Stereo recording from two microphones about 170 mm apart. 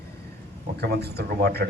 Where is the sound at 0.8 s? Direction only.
70° right (ahead or behind).